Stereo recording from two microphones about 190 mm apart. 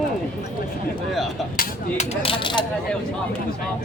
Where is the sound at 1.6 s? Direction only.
35° left (ahead or behind).